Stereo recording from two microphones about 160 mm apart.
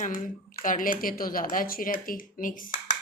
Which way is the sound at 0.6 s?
60° left (ahead or behind).